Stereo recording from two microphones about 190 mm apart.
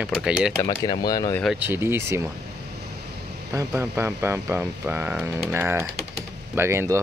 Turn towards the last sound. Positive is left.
turn(degrees=-15)  # may be behind; listen again after turning